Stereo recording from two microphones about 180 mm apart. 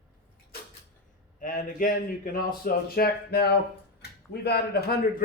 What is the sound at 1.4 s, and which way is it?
A man's voice, 45° left (ahead or behind).